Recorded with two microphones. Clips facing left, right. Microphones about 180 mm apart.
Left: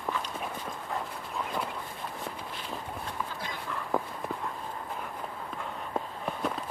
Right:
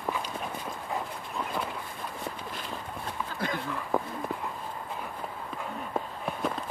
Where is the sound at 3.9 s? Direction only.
Centre (ahead or behind).